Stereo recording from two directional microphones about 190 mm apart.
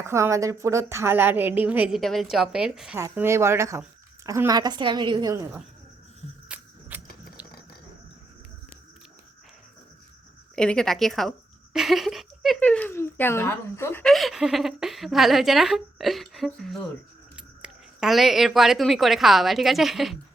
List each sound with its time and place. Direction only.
0.0 s a woman's voice: 15° right (ahead or behind)
3.0 s a woman's voice: 15° right (ahead or behind)
6.5 s a sound: 10° right (ahead or behind)
10.5 s a woman's voice: 5° left (ahead or behind)
14.1 s a woman's voice: centre (ahead or behind)